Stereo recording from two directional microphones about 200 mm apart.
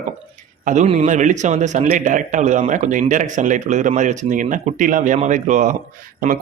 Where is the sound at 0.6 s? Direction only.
35° right (ahead or behind).